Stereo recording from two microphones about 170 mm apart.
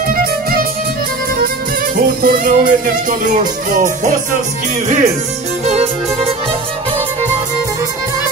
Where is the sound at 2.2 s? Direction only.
55° right (ahead or behind).